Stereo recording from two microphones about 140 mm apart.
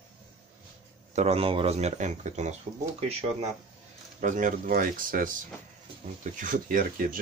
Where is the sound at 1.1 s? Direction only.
45° right (ahead or behind).